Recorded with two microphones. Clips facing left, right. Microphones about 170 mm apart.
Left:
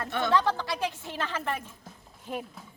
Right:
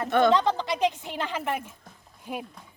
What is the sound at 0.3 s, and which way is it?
A woman's voice, 20° right (ahead or behind).